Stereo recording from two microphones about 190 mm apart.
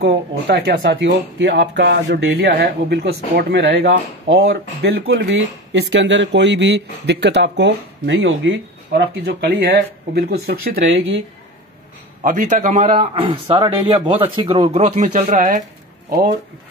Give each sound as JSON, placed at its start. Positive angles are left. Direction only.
{"t": 0.0, "sound": "speech", "side_deg": -65}
{"t": 4.3, "sound": "speech", "side_deg": -75}
{"t": 10.9, "sound": "speech", "side_deg": -80}
{"t": 12.2, "sound": "a man's voice", "side_deg": -40}